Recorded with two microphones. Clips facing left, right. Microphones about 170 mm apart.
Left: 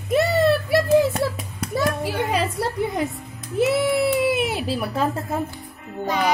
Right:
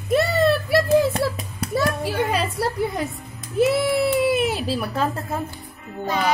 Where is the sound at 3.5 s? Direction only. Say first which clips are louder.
Right 1 dB; 20° left (ahead or behind).